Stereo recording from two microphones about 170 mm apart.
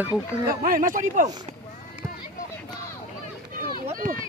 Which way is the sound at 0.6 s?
55° right (ahead or behind).